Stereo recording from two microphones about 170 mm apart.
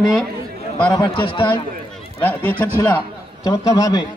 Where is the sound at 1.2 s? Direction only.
30° left (ahead or behind).